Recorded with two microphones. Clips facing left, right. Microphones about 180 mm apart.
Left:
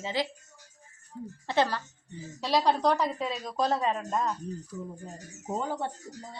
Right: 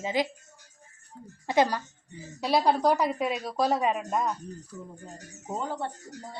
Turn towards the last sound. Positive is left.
turn(degrees=10)  # may be behind; listen again after turning